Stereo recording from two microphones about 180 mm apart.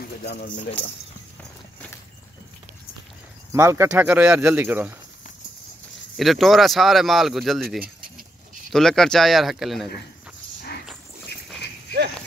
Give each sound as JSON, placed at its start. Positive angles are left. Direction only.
{"t": 0.2, "sound": "speech", "side_deg": 65}
{"t": 3.5, "sound": "speech", "side_deg": -15}
{"t": 6.1, "sound": "speech", "side_deg": 0}